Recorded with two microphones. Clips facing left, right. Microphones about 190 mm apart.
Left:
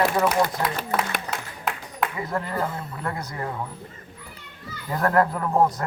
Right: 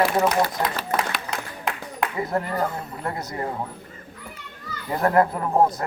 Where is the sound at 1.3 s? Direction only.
5° left (ahead or behind).